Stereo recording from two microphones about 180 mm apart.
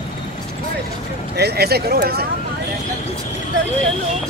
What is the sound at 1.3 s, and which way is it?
Speech, 65° right (ahead or behind).